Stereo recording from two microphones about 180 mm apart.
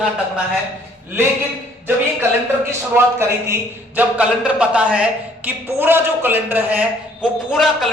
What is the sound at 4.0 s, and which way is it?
A man's voice, 5° right (ahead or behind).